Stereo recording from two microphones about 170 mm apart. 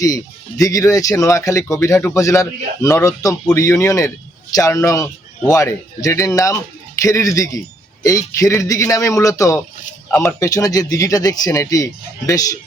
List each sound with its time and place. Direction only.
0.0 s speech: 20° left (ahead or behind)